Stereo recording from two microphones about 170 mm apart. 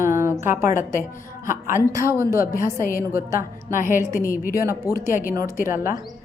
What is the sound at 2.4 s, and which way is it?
Speech, 55° left (ahead or behind).